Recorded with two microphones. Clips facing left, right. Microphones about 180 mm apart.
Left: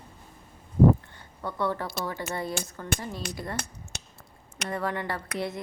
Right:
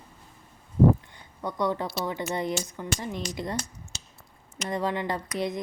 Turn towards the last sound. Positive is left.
turn(degrees=-15)  # may be behind; listen again after turning